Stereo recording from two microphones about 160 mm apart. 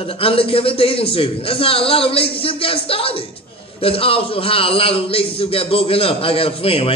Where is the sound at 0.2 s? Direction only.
35° left (ahead or behind).